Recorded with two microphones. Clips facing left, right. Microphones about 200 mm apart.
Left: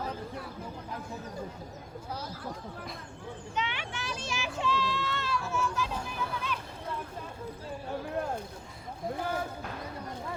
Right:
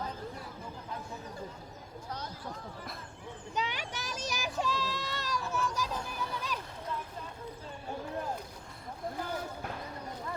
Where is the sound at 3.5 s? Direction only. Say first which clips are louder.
Even; 40° right (ahead or behind).